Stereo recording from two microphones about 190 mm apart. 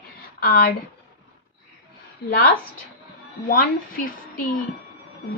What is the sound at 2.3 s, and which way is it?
A woman's voice, 55° left (ahead or behind).